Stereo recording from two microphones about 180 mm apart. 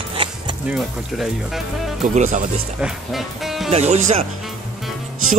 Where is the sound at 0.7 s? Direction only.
Centre (ahead or behind).